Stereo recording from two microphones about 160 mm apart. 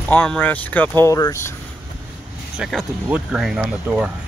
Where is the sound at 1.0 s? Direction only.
20° left (ahead or behind).